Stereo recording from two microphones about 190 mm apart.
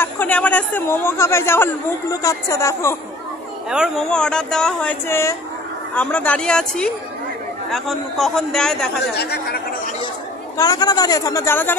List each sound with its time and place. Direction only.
0.0 s speech: 10° left (ahead or behind)
3.7 s speech: centre (ahead or behind)
9.1 s speech: 60° left (ahead or behind)
10.6 s a man's voice: 20° left (ahead or behind)